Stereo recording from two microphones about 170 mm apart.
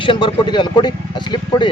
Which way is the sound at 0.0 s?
30° left (ahead or behind).